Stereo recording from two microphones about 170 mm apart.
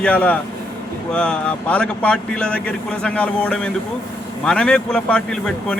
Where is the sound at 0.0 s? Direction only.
5° left (ahead or behind).